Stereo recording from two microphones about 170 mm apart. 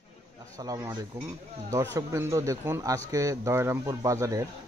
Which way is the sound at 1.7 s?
15° right (ahead or behind).